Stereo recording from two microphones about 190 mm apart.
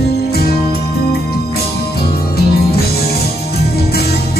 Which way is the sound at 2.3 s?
55° left (ahead or behind).